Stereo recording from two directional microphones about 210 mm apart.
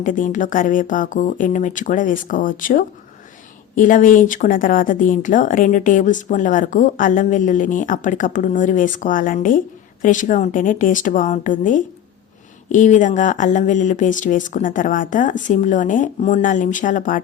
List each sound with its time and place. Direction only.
0.0 s a woman's voice: 40° left (ahead or behind)